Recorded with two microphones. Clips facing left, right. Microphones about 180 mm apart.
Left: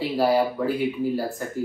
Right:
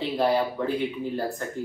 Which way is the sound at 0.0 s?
5° left (ahead or behind).